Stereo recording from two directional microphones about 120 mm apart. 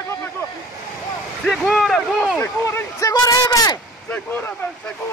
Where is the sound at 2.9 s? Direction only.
30° left (ahead or behind).